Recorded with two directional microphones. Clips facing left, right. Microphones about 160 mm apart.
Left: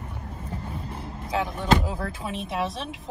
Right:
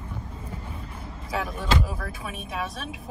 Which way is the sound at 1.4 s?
25° left (ahead or behind).